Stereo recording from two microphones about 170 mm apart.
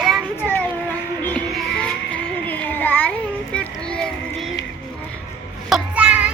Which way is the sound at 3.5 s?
5° left (ahead or behind).